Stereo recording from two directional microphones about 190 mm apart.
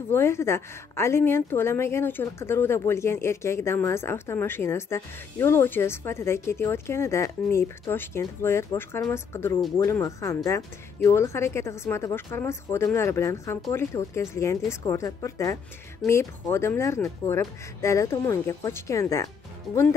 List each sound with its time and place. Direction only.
0.1 s a woman's voice: 15° left (ahead or behind)